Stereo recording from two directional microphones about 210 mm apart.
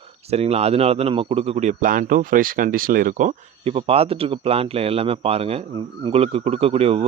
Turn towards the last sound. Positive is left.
turn(degrees=-30)  # may be behind; listen again after turning